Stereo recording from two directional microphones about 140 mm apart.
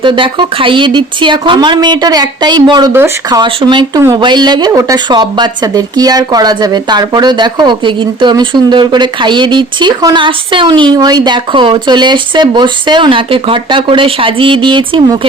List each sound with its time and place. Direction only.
0.0 s a woman's voice: 35° right (ahead or behind)